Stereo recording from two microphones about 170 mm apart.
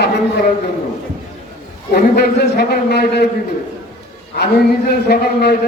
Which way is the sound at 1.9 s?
65° left (ahead or behind).